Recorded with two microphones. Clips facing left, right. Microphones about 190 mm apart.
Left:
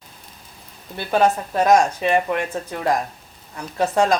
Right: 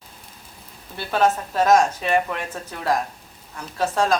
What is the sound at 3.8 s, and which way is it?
Speech, 15° left (ahead or behind).